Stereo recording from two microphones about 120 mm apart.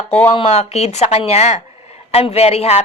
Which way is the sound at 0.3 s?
55° left (ahead or behind).